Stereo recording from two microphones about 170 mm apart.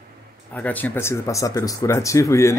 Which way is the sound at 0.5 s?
10° left (ahead or behind).